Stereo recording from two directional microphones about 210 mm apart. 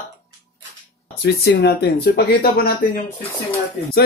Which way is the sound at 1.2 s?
50° left (ahead or behind).